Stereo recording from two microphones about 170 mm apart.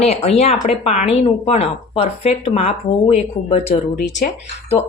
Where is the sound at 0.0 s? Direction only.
40° left (ahead or behind).